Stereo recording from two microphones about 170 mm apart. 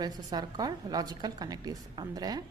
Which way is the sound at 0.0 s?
25° right (ahead or behind).